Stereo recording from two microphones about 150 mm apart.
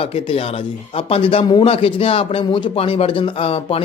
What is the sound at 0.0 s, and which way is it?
Speech, 40° left (ahead or behind).